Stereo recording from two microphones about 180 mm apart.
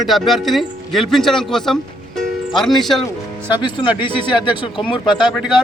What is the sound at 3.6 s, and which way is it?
Speech, 25° left (ahead or behind).